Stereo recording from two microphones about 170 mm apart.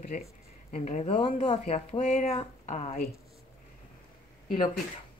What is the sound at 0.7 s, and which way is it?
Speech, 40° left (ahead or behind).